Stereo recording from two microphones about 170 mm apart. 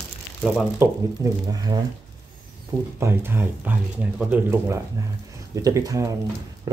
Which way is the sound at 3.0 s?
15° right (ahead or behind).